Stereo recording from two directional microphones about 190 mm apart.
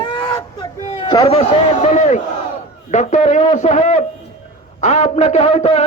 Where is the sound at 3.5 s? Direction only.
40° left (ahead or behind).